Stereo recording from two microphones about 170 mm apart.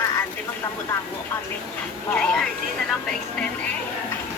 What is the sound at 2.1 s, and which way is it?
Vehicle, 5° left (ahead or behind).